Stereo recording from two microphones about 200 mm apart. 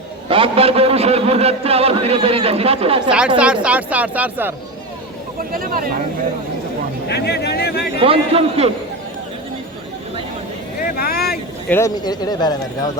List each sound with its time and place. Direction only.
0.3 s a man's voice: 25° right (ahead or behind)
3.1 s speech: 5° right (ahead or behind)
5.5 s speech: 45° right (ahead or behind)
7.1 s speech: 55° left (ahead or behind)
8.0 s a man's voice: 30° right (ahead or behind)
10.8 s vehicle: 50° left (ahead or behind)
11.7 s speech: 15° left (ahead or behind)